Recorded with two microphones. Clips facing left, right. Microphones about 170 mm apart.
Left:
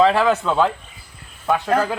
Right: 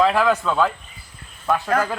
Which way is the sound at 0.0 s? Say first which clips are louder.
Left 2 dB; 5° left (ahead or behind).